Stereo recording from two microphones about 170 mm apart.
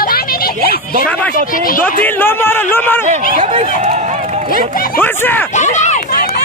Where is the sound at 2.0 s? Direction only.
10° left (ahead or behind).